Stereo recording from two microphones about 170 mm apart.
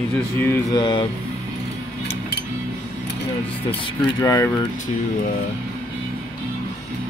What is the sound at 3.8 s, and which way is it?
Speech, 20° left (ahead or behind).